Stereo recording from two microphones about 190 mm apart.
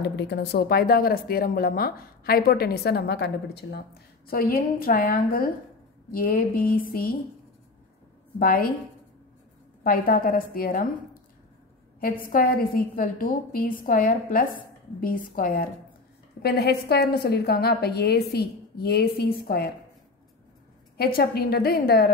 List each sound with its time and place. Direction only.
0.1 s speech: 60° left (ahead or behind)
8.4 s speech: 50° left (ahead or behind)
9.8 s speech: 50° left (ahead or behind)
12.0 s a woman's voice: 50° left (ahead or behind)
21.0 s a woman's voice: 55° left (ahead or behind)